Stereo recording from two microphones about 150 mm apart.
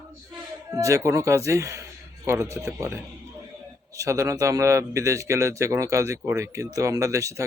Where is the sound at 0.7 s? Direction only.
20° right (ahead or behind).